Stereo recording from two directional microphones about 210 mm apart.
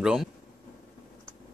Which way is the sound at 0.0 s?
5° right (ahead or behind).